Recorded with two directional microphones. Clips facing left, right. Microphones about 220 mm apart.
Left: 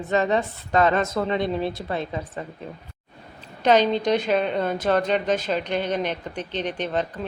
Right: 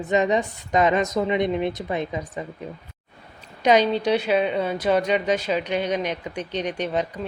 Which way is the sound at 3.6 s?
10° right (ahead or behind).